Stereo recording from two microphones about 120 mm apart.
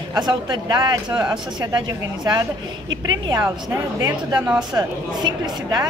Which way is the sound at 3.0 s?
35° right (ahead or behind).